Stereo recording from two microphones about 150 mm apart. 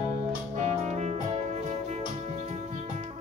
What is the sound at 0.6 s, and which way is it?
Music, 50° right (ahead or behind).